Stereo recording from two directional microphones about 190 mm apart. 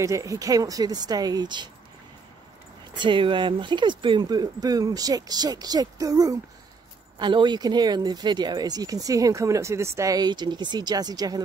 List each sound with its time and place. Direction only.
0.0 s speech: 15° right (ahead or behind)
3.0 s speech: 25° right (ahead or behind)